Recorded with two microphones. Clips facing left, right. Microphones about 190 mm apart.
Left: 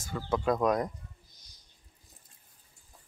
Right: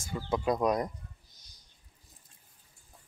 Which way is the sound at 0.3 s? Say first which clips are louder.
Left 1 dB; 10° right (ahead or behind).